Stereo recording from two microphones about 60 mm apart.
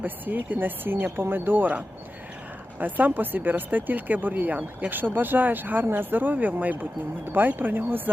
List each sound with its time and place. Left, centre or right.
0.0 s speech: right